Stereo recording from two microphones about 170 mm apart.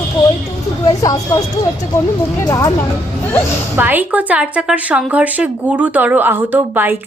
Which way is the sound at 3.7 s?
10° right (ahead or behind).